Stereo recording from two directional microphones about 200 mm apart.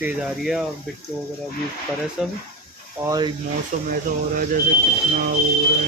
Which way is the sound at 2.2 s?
Centre (ahead or behind).